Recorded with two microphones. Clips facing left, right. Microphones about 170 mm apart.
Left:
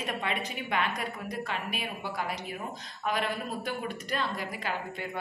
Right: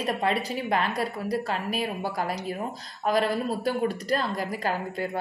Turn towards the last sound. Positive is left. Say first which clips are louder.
# right 6 dB
turn(degrees=-40)  # may be behind; listen again after turning